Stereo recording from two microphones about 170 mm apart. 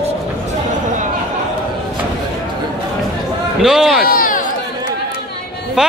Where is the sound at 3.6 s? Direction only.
Centre (ahead or behind).